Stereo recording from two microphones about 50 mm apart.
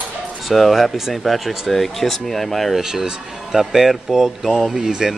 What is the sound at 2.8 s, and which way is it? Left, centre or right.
Speech, centre.